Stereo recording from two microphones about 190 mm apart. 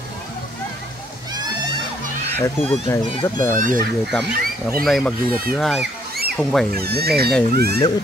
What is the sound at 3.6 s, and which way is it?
Speech, 45° right (ahead or behind).